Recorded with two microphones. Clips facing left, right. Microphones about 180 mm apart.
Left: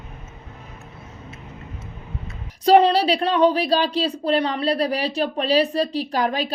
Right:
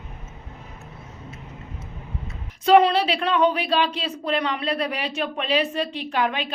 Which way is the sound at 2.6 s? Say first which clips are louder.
Left 2 dB; 35° left (ahead or behind).